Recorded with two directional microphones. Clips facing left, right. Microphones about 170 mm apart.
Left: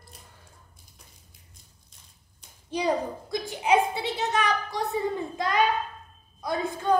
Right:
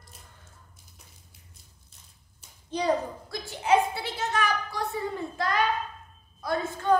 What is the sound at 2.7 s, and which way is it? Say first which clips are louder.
A woman's voice: even; 15° left (ahead or behind).